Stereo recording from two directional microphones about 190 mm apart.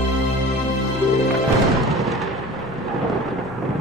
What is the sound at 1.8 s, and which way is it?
Artillery fire, centre (ahead or behind).